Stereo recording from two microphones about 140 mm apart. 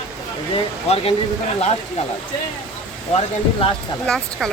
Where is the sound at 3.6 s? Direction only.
40° left (ahead or behind).